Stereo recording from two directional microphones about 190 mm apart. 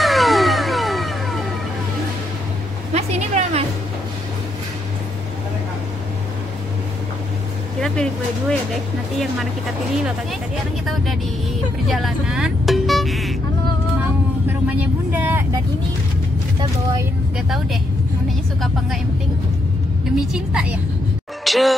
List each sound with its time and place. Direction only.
0.0 s music: centre (ahead or behind)
2.9 s a sound: 35° right (ahead or behind)
7.8 s speech: 5° left (ahead or behind)
11.9 s vehicle: centre (ahead or behind)
14.5 s vehicle: 10° right (ahead or behind)
20.2 s a woman's voice: 5° right (ahead or behind)
21.5 s music: centre (ahead or behind)